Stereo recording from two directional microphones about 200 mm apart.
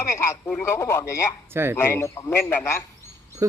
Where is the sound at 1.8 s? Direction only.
10° left (ahead or behind).